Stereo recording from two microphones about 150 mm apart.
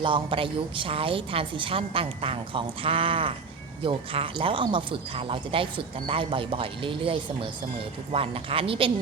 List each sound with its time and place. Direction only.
0.0 s speech: 35° right (ahead or behind)